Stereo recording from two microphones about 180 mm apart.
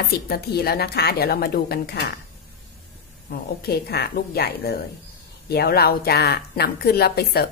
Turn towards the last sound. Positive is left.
turn(degrees=60)  # may be behind; listen again after turning